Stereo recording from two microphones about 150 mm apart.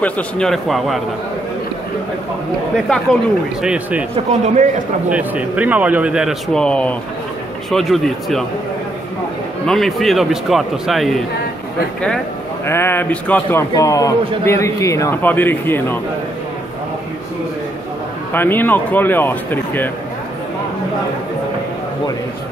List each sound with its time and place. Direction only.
0.0 s a man's voice: 5° left (ahead or behind)
2.7 s a man's voice: 5° left (ahead or behind)
3.6 s speech: 10° right (ahead or behind)
4.1 s speech: 45° right (ahead or behind)
5.1 s speech: 10° right (ahead or behind)
6.5 s a man's voice: 5° left (ahead or behind)
9.7 s a man's voice: centre (ahead or behind)
12.6 s a man's voice: 15° left (ahead or behind)
18.3 s a man's voice: 15° left (ahead or behind)